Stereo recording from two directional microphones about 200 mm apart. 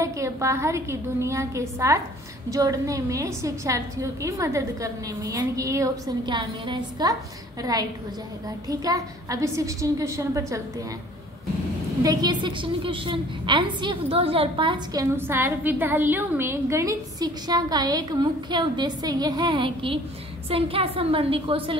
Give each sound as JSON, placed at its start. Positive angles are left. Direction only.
{"t": 0.0, "sound": "a woman's voice", "side_deg": -15}
{"t": 8.6, "sound": "a woman's voice", "side_deg": -15}
{"t": 12.0, "sound": "a woman's voice", "side_deg": -20}
{"t": 15.1, "sound": "a woman's voice", "side_deg": -10}